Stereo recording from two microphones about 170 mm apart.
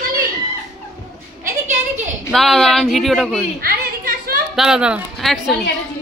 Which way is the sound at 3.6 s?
60° right (ahead or behind).